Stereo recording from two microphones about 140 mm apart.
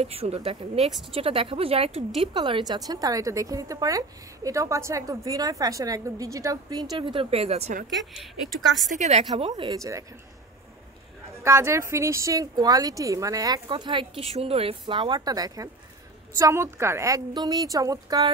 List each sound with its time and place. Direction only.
0.0 s speech: 45° right (ahead or behind)
2.3 s a woman's voice: 35° right (ahead or behind)
7.9 s a woman's voice: centre (ahead or behind)
8.9 s a woman's voice: 55° right (ahead or behind)
9.5 s a woman's voice: 30° right (ahead or behind)
11.4 s a woman's voice: 20° right (ahead or behind)